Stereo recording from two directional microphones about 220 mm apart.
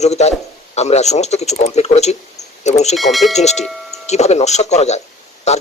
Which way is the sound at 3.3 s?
30° left (ahead or behind).